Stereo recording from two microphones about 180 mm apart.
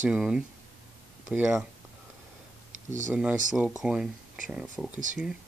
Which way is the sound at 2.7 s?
45° right (ahead or behind).